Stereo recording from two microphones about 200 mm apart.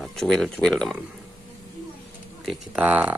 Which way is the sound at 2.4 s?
5° right (ahead or behind).